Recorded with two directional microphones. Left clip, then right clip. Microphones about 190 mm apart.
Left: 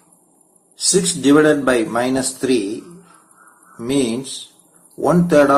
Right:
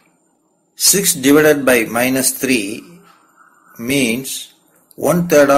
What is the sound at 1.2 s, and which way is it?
A man's voice, 50° right (ahead or behind).